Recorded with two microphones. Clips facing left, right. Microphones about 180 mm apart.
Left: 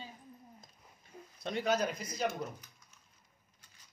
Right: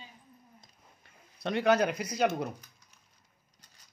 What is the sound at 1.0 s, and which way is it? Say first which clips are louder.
Speech: right 5 dB; 70° right (ahead or behind).